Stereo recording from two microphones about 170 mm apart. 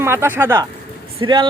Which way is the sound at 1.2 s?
25° right (ahead or behind).